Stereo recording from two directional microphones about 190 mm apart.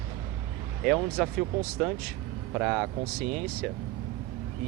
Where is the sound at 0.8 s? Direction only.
Centre (ahead or behind).